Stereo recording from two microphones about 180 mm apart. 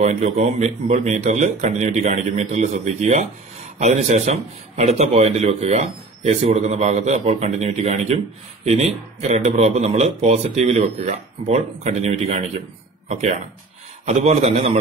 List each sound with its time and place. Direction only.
0.0 s a man's voice: 40° right (ahead or behind)